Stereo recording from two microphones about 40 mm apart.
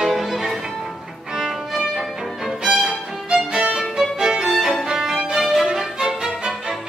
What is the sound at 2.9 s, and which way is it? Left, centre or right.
Violin, centre.